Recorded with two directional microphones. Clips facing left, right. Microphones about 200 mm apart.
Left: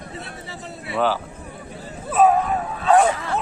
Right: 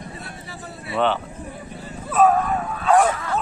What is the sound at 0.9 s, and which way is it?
Speech, 5° left (ahead or behind).